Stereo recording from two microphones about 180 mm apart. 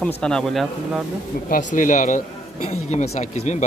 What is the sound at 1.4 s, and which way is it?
Speech, 50° left (ahead or behind).